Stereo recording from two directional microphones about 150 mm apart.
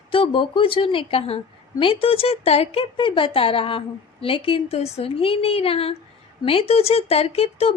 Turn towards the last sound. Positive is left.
turn(degrees=45)  # may be behind; listen again after turning